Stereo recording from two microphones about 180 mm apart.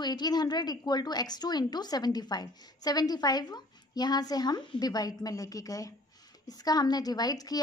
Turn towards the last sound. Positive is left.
turn(degrees=20)  # may be behind; listen again after turning